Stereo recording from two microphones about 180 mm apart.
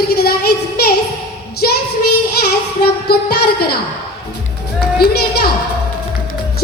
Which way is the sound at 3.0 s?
60° left (ahead or behind).